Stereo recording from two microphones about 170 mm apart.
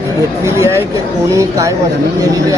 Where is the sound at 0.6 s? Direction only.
15° right (ahead or behind).